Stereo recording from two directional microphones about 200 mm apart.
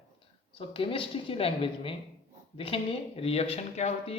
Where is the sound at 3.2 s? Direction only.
30° left (ahead or behind).